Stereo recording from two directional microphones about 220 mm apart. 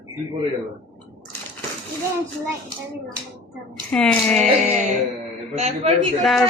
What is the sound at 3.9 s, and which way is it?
Speech, 5° left (ahead or behind).